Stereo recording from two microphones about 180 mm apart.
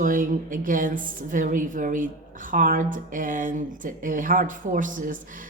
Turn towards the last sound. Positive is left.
turn(degrees=-50)  # may be behind; listen again after turning